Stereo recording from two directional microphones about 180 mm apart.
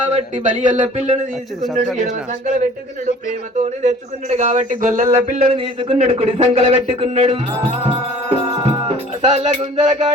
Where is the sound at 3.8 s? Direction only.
40° right (ahead or behind).